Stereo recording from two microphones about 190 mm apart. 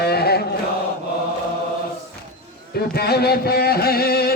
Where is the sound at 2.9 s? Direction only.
55° left (ahead or behind).